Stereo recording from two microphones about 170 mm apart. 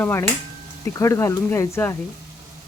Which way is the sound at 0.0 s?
15° left (ahead or behind).